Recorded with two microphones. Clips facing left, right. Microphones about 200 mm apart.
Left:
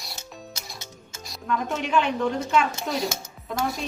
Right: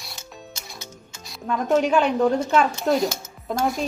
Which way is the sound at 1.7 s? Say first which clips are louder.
Right 8 dB; 40° right (ahead or behind).